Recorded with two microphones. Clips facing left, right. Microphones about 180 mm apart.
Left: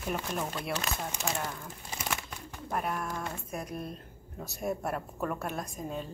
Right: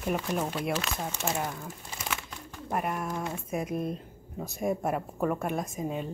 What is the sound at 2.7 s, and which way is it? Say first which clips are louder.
Speech: right 2 dB; 5° right (ahead or behind).